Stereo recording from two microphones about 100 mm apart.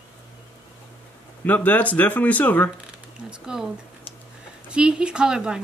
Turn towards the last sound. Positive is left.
turn(degrees=-5)  # may be behind; listen again after turning